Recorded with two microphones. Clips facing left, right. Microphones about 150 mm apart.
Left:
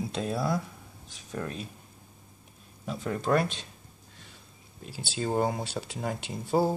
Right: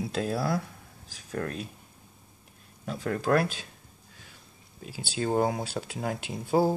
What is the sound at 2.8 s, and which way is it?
Speech, centre (ahead or behind).